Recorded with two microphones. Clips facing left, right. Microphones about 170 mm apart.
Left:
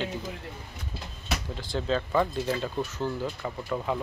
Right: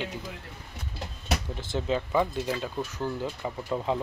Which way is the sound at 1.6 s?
20° right (ahead or behind).